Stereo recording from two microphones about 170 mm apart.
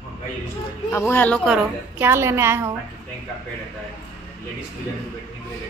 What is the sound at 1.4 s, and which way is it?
A woman's voice, 10° right (ahead or behind).